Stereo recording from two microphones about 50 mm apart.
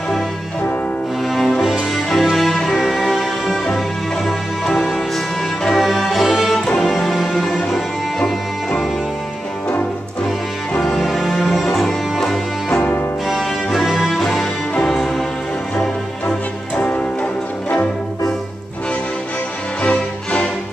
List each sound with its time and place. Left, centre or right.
1.2 s music: centre
11.0 s music: centre; by 17.8 s left
19.8 s music: left